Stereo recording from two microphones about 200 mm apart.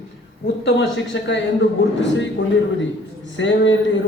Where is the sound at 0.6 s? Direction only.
60° left (ahead or behind).